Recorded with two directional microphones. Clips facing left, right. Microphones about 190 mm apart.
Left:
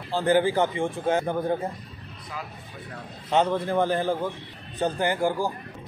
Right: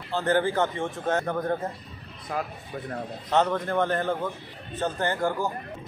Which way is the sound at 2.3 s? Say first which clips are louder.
Right 7 dB; 55° right (ahead or behind).